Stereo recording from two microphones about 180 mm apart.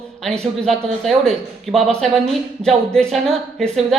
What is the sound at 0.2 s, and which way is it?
A woman's voice, 5° left (ahead or behind).